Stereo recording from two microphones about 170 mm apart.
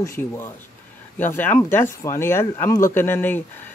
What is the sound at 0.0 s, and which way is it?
Speech, 15° left (ahead or behind).